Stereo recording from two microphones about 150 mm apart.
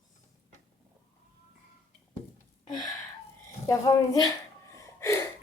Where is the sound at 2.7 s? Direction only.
25° left (ahead or behind).